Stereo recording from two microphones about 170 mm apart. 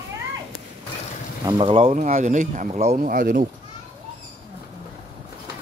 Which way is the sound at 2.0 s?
45° right (ahead or behind).